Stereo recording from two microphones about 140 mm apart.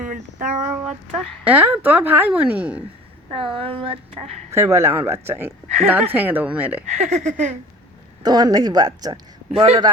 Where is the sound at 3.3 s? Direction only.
40° right (ahead or behind).